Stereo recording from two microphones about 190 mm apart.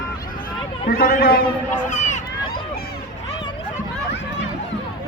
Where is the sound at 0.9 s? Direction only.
50° left (ahead or behind).